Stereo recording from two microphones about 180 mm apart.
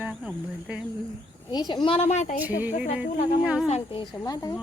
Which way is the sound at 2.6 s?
5° right (ahead or behind).